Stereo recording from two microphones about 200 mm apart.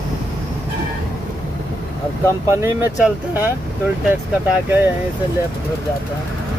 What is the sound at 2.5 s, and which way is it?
Speech, 10° right (ahead or behind).